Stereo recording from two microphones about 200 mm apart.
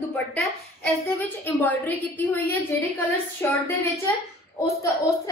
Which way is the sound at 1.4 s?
10° left (ahead or behind).